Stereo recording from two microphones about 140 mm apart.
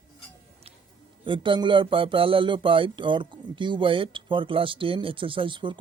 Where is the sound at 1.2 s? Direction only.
35° right (ahead or behind).